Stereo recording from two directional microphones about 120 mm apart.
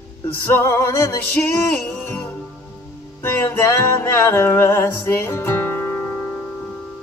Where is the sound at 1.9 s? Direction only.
15° left (ahead or behind).